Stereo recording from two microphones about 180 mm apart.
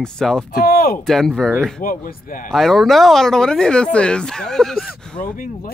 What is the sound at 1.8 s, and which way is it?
Speech, 50° left (ahead or behind).